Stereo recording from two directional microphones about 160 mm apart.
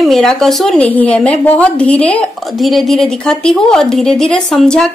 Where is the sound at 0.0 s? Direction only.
Centre (ahead or behind).